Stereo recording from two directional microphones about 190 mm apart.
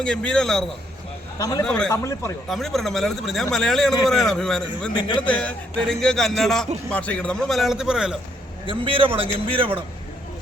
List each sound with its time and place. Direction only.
0.0 s speech: 5° left (ahead or behind)
1.4 s a man's voice: 20° left (ahead or behind)
1.6 s speech: 5° left (ahead or behind)
1.9 s a man's voice: 15° left (ahead or behind)
2.5 s speech: centre (ahead or behind)
4.9 s a man's voice: 25° left (ahead or behind)
5.2 s speech: 5° left (ahead or behind)
8.6 s a man's voice: 25° right (ahead or behind)